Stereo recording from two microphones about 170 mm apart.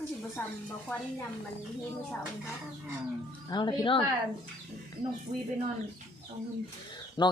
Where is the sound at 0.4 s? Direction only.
10° left (ahead or behind).